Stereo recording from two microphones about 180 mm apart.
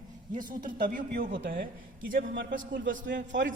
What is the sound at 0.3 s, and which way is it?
Speech, 50° right (ahead or behind).